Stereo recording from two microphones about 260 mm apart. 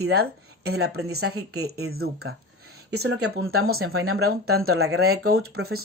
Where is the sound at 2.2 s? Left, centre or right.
Right.